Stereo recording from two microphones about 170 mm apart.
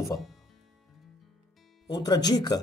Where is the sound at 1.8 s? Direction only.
25° left (ahead or behind).